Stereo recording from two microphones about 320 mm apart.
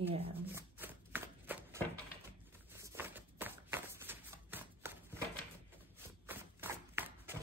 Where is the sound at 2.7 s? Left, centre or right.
Centre.